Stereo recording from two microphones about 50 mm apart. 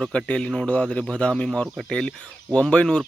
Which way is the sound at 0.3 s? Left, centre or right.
Left.